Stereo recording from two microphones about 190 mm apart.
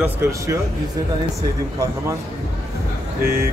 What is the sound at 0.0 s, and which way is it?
Speech, 10° right (ahead or behind).